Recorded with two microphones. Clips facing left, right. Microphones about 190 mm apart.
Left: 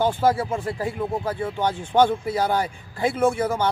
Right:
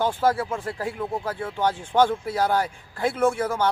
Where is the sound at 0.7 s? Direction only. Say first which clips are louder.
Left 2 dB; centre (ahead or behind).